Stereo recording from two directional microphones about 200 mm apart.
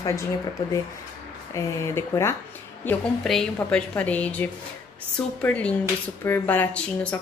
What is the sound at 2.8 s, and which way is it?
A woman's voice, centre (ahead or behind).